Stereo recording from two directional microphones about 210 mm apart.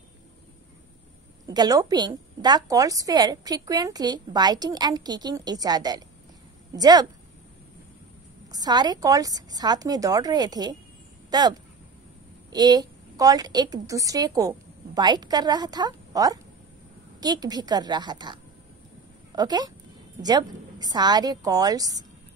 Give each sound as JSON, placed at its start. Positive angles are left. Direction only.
{"t": 1.4, "sound": "a woman's voice", "side_deg": -20}
{"t": 8.5, "sound": "a woman's voice", "side_deg": -20}